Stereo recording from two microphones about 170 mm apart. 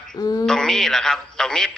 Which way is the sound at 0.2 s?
25° left (ahead or behind).